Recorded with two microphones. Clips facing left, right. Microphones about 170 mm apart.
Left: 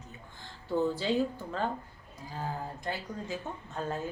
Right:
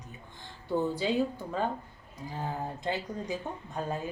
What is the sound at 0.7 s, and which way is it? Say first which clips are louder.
A woman's voice: even; 15° right (ahead or behind).